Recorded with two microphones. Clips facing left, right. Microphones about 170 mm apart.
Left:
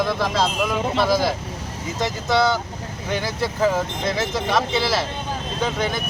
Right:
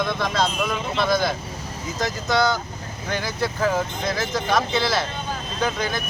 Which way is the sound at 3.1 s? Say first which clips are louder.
Left 1 dB; centre (ahead or behind).